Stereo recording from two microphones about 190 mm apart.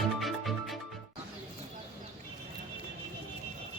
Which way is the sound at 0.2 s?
Centre (ahead or behind).